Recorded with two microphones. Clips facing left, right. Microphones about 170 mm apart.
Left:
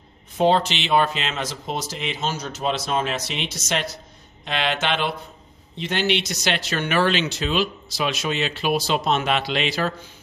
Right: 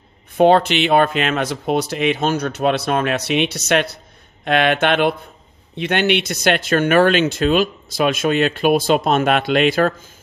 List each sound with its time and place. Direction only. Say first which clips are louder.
0.3 s speech: right 6 dB; 60° right (ahead or behind)